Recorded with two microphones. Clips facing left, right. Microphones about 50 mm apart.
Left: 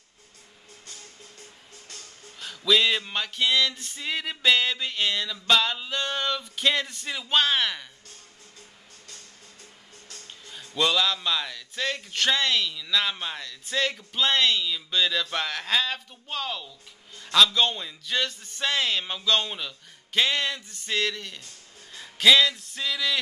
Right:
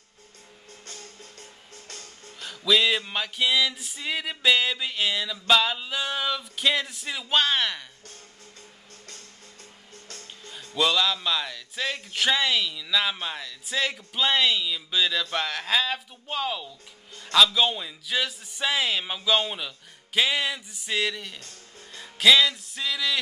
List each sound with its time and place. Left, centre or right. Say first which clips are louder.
0.8 s music: right 3 dB; right
2.4 s speech: even; centre
10.4 s speech: right 1 dB; centre
21.9 s music: even; centre